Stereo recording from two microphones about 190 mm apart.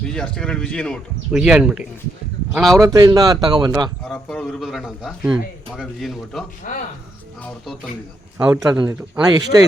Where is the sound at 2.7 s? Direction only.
20° right (ahead or behind).